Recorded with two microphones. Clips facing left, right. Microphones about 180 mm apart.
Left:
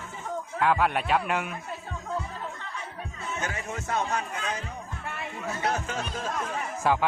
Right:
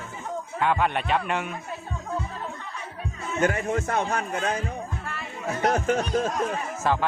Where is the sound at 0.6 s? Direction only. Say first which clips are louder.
Even; 5° left (ahead or behind).